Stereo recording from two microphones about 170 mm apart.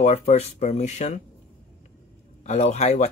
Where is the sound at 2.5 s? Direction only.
40° left (ahead or behind).